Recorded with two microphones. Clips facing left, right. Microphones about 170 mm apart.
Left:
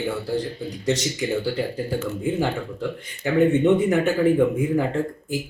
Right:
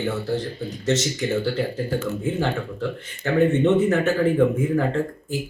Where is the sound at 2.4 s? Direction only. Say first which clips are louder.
Even; 10° left (ahead or behind).